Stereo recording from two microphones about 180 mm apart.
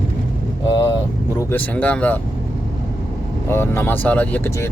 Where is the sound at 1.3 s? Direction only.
10° left (ahead or behind).